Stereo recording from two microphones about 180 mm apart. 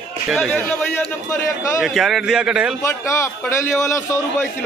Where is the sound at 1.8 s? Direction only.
Centre (ahead or behind).